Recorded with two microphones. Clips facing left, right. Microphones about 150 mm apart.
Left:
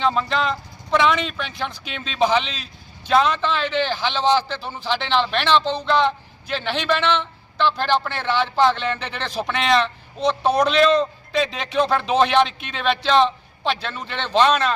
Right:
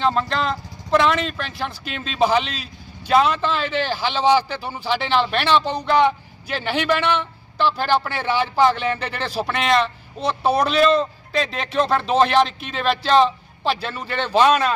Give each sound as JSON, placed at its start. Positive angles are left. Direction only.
{"t": 0.0, "sound": "a man's voice", "side_deg": 0}